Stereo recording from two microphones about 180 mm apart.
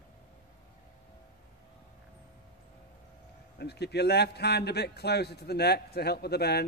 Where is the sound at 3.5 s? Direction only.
65° left (ahead or behind).